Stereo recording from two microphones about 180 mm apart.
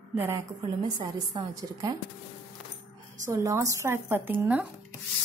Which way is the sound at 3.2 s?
15° right (ahead or behind).